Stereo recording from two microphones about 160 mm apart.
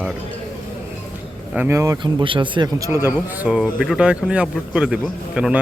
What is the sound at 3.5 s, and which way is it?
A man's voice, 5° right (ahead or behind).